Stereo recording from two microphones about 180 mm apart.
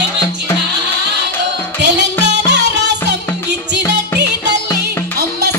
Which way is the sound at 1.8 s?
70° right (ahead or behind).